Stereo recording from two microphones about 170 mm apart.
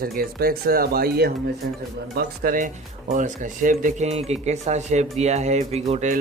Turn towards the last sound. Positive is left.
turn(degrees=-40)  # may be behind; listen again after turning